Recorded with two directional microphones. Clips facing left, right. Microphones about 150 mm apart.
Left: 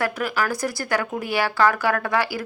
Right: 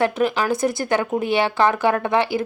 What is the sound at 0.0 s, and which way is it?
Speech, 20° right (ahead or behind).